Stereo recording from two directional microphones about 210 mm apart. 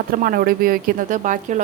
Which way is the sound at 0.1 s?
45° right (ahead or behind).